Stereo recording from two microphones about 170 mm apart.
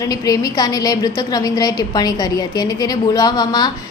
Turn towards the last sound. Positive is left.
turn(degrees=25)  # may be behind; listen again after turning